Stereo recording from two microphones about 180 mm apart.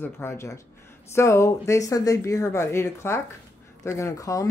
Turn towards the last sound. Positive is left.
turn(degrees=20)  # may be behind; listen again after turning